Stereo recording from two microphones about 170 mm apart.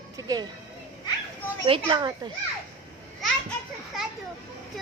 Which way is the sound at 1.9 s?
25° right (ahead or behind).